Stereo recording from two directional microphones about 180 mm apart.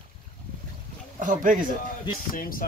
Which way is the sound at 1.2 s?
45° right (ahead or behind).